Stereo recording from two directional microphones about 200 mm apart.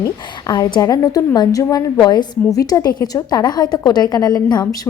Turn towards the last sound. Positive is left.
turn(degrees=20)  # may be behind; listen again after turning